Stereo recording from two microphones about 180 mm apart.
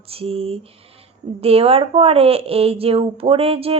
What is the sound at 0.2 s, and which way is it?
Speech, 35° right (ahead or behind).